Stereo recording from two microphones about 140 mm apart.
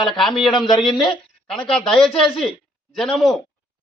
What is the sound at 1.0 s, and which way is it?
Speech, 5° left (ahead or behind).